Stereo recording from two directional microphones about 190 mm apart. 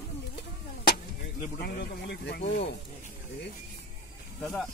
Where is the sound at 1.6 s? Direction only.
60° left (ahead or behind).